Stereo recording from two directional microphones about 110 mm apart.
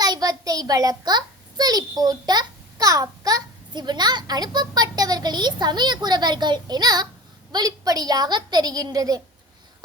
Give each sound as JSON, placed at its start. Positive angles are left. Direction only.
{"t": 0.0, "sound": "a child's voice", "side_deg": -35}